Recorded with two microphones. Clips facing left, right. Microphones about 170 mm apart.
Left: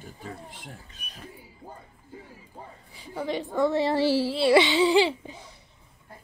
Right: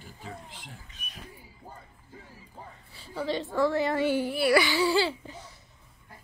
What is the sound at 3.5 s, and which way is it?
Speech, 20° left (ahead or behind).